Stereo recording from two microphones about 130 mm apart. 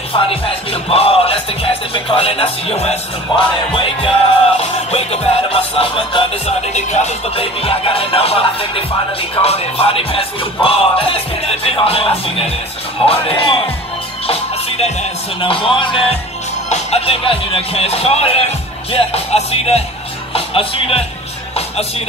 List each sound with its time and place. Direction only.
0.1 s music: 45° left (ahead or behind)
3.3 s speech: 35° left (ahead or behind)
4.6 s music: 50° left (ahead or behind)
13.0 s speech: 40° left (ahead or behind)
14.2 s music: 50° left (ahead or behind)
16.6 s music: 55° left (ahead or behind)
20.3 s speech: 45° left (ahead or behind)
21.5 s music: 50° left (ahead or behind)